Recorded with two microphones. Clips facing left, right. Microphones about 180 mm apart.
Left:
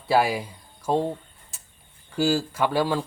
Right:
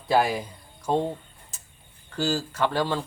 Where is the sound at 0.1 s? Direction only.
5° left (ahead or behind).